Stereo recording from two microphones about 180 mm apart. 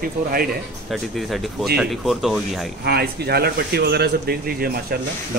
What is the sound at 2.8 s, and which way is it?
A man's voice, 60° right (ahead or behind).